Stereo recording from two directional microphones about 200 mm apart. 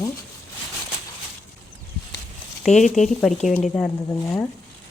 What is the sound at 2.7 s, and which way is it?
Speech, 35° left (ahead or behind).